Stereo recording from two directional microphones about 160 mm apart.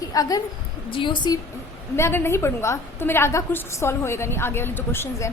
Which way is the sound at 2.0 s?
15° left (ahead or behind).